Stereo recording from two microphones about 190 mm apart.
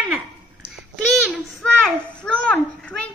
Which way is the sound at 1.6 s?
5° left (ahead or behind).